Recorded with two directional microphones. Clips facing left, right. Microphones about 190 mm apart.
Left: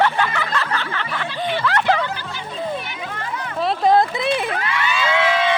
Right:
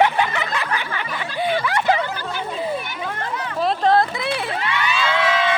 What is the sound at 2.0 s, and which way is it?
Speech, 45° right (ahead or behind).